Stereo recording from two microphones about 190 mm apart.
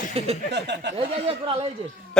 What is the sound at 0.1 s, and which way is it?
Speech, 30° right (ahead or behind).